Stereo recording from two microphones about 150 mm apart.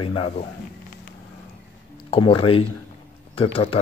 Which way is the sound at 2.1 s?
35° left (ahead or behind).